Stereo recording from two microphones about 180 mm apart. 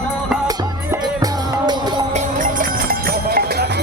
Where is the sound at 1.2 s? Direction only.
25° right (ahead or behind).